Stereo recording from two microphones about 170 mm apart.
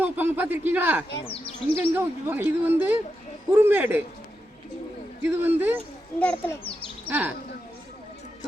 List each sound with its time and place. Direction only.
0.0 s speech: 10° right (ahead or behind)
1.2 s speech: 30° left (ahead or behind)
1.8 s speech: 10° right (ahead or behind)
5.2 s speech: 10° right (ahead or behind)
6.1 s a child's voice: 10° left (ahead or behind)
7.1 s speech: 10° right (ahead or behind)